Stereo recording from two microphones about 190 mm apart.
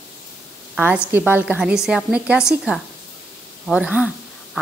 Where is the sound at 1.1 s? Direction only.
10° right (ahead or behind).